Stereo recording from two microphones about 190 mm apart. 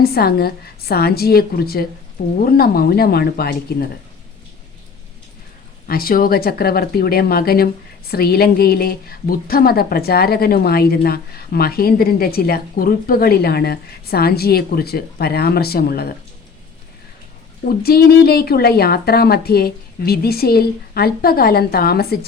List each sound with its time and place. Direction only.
0.0 s speech: 55° left (ahead or behind)
5.9 s speech: 50° left (ahead or behind)
17.7 s speech: 55° left (ahead or behind)